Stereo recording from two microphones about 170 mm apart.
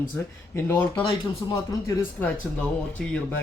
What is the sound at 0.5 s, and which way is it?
Speech, 15° left (ahead or behind).